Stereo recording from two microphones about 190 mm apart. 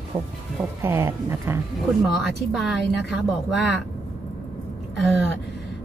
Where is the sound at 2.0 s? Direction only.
Centre (ahead or behind).